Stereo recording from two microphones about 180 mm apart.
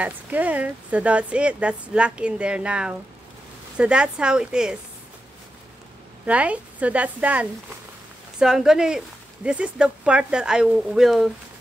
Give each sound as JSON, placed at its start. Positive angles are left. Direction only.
{"t": 0.0, "sound": "speech", "side_deg": -10}
{"t": 6.2, "sound": "speech", "side_deg": -5}